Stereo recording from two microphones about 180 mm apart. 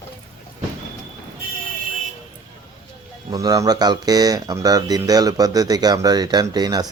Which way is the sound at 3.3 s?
20° right (ahead or behind).